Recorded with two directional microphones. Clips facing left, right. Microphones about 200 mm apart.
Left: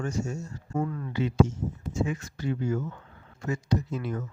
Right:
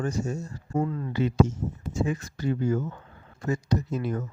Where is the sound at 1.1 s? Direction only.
40° right (ahead or behind).